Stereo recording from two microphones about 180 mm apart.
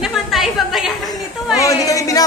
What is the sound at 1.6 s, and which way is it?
Speech, 20° left (ahead or behind).